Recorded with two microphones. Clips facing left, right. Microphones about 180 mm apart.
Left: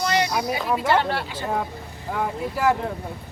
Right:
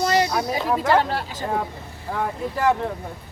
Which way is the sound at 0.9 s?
40° right (ahead or behind).